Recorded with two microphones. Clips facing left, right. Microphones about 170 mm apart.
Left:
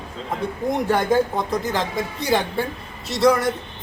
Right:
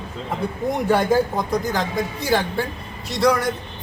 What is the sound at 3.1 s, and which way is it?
Speech, 25° left (ahead or behind).